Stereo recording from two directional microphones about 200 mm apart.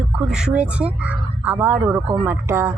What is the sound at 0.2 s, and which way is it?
Speech, 5° right (ahead or behind).